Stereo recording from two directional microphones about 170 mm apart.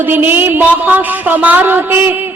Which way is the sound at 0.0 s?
10° right (ahead or behind).